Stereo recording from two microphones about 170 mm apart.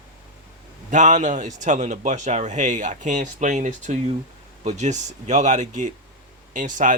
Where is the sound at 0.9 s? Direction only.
45° right (ahead or behind).